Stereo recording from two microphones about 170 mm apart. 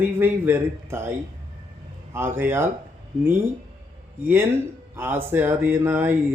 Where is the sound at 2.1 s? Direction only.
15° right (ahead or behind).